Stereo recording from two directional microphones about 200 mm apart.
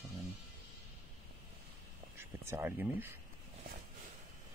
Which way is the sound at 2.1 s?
10° right (ahead or behind).